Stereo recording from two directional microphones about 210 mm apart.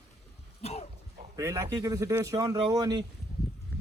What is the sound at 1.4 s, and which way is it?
A man's voice, 15° right (ahead or behind).